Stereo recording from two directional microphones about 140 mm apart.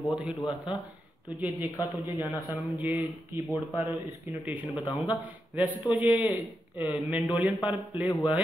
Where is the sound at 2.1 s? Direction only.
30° left (ahead or behind).